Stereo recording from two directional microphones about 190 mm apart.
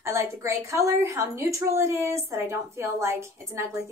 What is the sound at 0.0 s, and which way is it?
A woman's voice, 15° right (ahead or behind).